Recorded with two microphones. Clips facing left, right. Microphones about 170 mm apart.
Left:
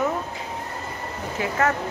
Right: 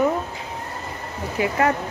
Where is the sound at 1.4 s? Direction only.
15° right (ahead or behind).